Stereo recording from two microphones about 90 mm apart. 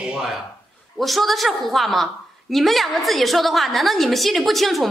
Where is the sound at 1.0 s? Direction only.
Centre (ahead or behind).